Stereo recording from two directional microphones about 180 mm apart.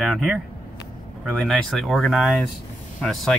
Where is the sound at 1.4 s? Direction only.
Centre (ahead or behind).